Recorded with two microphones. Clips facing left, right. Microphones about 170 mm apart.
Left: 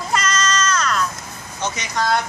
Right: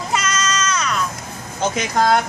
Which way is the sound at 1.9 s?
50° right (ahead or behind).